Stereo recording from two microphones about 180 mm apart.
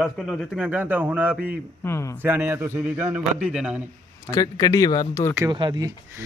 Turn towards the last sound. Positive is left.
turn(degrees=-20)  # may be behind; listen again after turning